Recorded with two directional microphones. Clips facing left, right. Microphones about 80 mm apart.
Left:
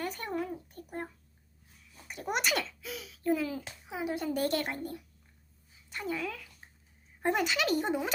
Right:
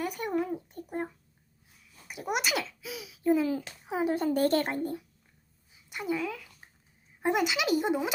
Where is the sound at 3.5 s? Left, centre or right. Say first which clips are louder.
Right 7 dB; right.